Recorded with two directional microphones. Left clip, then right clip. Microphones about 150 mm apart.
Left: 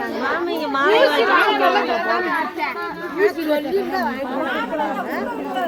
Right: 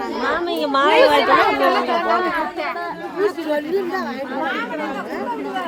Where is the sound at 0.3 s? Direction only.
45° right (ahead or behind).